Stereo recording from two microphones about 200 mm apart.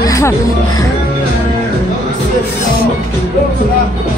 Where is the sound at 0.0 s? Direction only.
15° left (ahead or behind).